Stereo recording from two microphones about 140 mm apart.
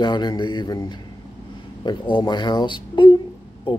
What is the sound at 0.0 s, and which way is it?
Speech, 30° left (ahead or behind).